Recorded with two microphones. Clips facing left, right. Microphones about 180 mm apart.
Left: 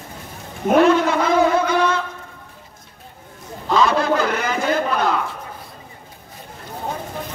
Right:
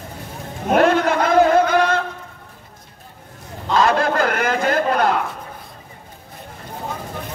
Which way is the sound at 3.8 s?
50° right (ahead or behind).